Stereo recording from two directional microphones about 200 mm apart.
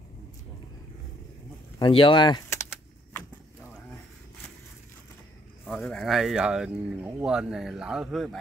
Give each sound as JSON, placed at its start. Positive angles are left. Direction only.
{"t": 1.8, "sound": "speech", "side_deg": 25}
{"t": 5.7, "sound": "speech", "side_deg": 5}